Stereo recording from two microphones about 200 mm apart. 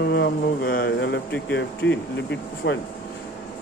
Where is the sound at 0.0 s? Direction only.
55° left (ahead or behind).